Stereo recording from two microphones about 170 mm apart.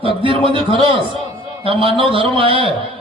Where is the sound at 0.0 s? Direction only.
30° right (ahead or behind).